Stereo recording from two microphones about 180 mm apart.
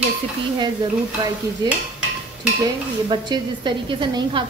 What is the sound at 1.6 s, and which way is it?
Speech, 20° right (ahead or behind).